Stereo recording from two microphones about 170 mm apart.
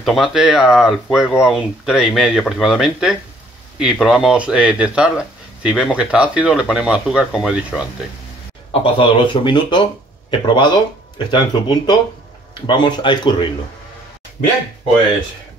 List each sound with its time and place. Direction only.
0.0 s speech: centre (ahead or behind)
8.8 s speech: 30° left (ahead or behind)